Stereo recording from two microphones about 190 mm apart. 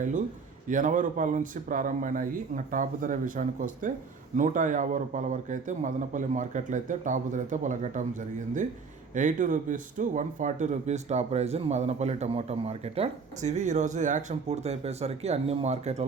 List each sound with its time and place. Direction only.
0.7 s speech: 45° right (ahead or behind)
9.1 s speech: 40° right (ahead or behind)